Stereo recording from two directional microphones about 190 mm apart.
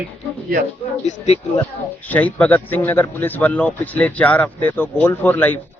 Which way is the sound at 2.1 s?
10° left (ahead or behind).